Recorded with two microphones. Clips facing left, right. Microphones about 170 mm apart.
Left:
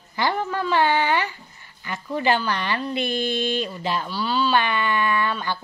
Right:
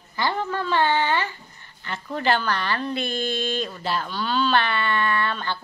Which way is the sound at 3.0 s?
45° right (ahead or behind).